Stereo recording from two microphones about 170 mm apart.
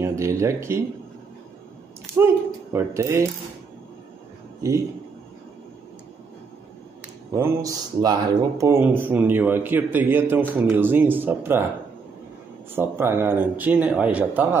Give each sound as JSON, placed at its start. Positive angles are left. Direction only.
{"t": 0.0, "sound": "a sound", "side_deg": -15}
{"t": 2.1, "sound": "speech", "side_deg": -15}
{"t": 4.6, "sound": "speech", "side_deg": -20}
{"t": 7.3, "sound": "speech", "side_deg": -20}
{"t": 12.7, "sound": "speech", "side_deg": -15}